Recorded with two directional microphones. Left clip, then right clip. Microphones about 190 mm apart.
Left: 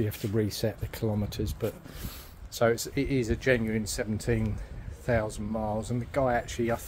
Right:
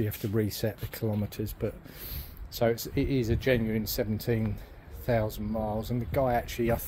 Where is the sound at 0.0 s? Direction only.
Centre (ahead or behind).